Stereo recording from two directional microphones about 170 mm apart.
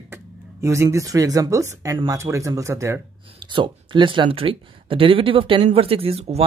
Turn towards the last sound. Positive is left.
turn(degrees=-35)  # may be behind; listen again after turning